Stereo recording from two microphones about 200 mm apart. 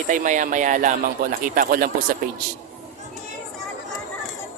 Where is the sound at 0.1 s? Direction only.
40° right (ahead or behind).